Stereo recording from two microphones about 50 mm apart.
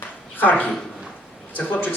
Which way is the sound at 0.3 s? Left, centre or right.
Left.